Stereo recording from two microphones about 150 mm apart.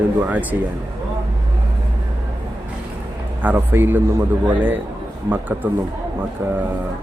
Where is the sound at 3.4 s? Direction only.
10° right (ahead or behind).